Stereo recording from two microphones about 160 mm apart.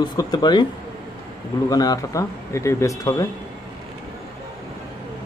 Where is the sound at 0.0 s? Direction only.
25° left (ahead or behind).